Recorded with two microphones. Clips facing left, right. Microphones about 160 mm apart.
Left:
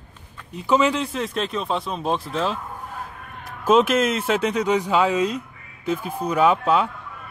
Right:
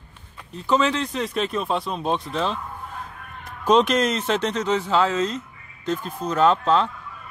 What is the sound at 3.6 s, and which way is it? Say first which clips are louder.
Speech: left 1 dB; 5° left (ahead or behind).